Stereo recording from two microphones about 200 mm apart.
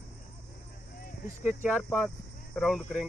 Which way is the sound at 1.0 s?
40° left (ahead or behind).